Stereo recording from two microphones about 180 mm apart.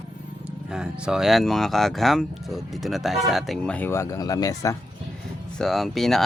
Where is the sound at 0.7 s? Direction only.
5° right (ahead or behind); by 4.7 s 20° left (ahead or behind).